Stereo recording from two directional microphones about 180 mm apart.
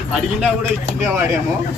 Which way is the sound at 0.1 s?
5° right (ahead or behind).